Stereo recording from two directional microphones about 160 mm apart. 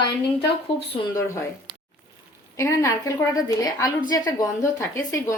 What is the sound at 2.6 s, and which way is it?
A woman's voice, 20° left (ahead or behind).